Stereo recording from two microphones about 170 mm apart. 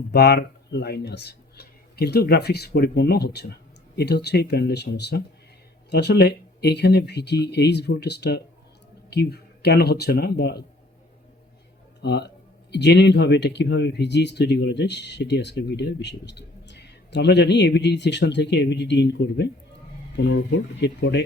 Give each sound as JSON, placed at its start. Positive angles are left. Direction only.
{"t": 0.1, "sound": "speech", "side_deg": 70}
{"t": 12.0, "sound": "speech", "side_deg": 80}